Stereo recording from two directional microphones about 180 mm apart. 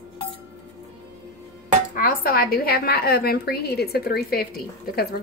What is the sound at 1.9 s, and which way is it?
A woman's voice, 50° left (ahead or behind).